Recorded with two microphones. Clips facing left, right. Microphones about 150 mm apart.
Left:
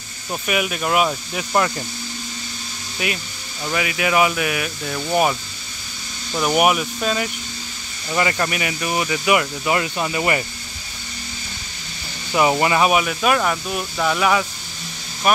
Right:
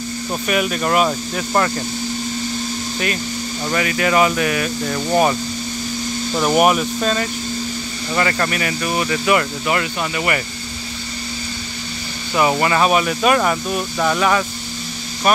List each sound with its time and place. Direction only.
0.5 s speech: 5° left (ahead or behind)
3.7 s speech: 10° left (ahead or behind)
6.6 s speech: 5° left (ahead or behind); by 10.4 s 20° left (ahead or behind)
12.4 s speech: 15° left (ahead or behind)